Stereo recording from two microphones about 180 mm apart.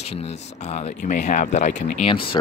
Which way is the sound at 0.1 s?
35° left (ahead or behind).